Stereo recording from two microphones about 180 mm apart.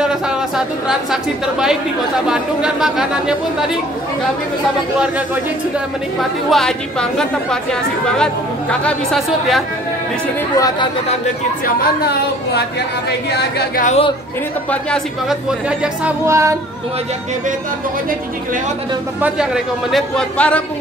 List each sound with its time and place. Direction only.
0.0 s a woman's voice: 5° right (ahead or behind)
5.0 s speech: 10° right (ahead or behind)
6.5 s a woman's voice: 5° left (ahead or behind)
11.6 s a woman's voice: 60° left (ahead or behind)
13.8 s speech: 35° left (ahead or behind)
14.7 s a woman's voice: 5° left (ahead or behind)
16.3 s speech: 15° right (ahead or behind)
19.2 s a woman's voice: 5° right (ahead or behind)